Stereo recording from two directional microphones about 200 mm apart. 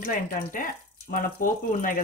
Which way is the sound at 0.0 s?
45° left (ahead or behind).